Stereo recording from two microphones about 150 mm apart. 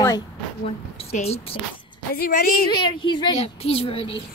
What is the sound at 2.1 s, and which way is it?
Speech, 85° left.